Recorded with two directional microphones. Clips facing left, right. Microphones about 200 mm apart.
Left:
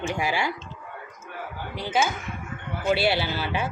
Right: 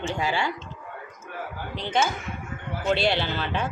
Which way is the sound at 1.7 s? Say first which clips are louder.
Even; 5° left (ahead or behind).